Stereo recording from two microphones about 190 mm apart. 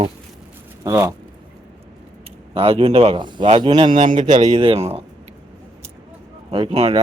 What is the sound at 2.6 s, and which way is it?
Speech, 30° right (ahead or behind).